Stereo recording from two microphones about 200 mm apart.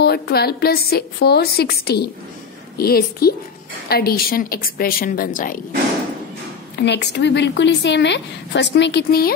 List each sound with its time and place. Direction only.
0.0 s a woman's voice: 50° left (ahead or behind)
6.8 s a woman's voice: 60° left (ahead or behind)